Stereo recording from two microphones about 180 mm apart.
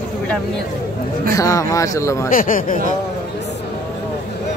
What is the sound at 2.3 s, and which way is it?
Speech, 50° left (ahead or behind).